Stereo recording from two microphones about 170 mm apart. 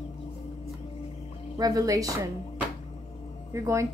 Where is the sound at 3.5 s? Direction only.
15° right (ahead or behind).